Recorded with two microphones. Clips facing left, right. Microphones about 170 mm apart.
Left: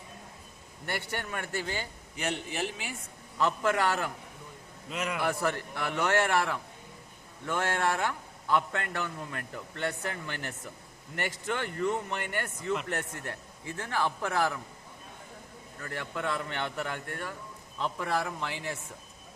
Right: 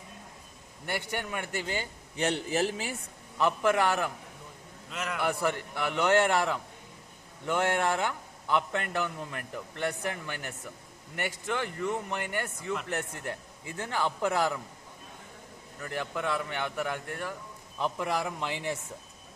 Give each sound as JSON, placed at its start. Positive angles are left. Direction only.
{"t": 0.9, "sound": "a man's voice", "side_deg": -15}
{"t": 2.1, "sound": "a man's voice", "side_deg": -35}
{"t": 3.3, "sound": "a man's voice", "side_deg": -15}
{"t": 4.9, "sound": "a man's voice", "side_deg": 5}
{"t": 5.3, "sound": "a man's voice", "side_deg": -15}
{"t": 15.8, "sound": "a man's voice", "side_deg": -15}